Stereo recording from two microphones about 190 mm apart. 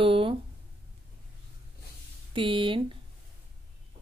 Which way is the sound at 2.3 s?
25° right (ahead or behind).